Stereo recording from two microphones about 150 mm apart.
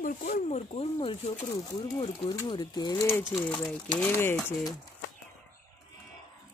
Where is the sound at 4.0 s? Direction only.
15° left (ahead or behind).